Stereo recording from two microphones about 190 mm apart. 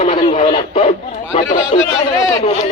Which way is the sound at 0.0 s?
30° left (ahead or behind).